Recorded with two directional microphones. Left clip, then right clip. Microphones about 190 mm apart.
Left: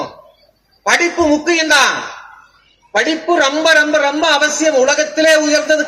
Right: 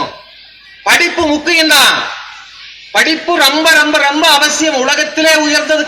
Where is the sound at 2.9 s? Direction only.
45° left (ahead or behind).